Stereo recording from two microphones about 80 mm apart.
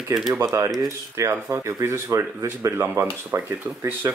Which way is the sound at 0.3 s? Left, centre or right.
Right.